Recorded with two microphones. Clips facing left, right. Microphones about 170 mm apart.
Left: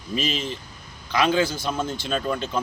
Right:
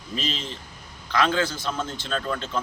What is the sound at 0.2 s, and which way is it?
A man's voice, 10° left (ahead or behind).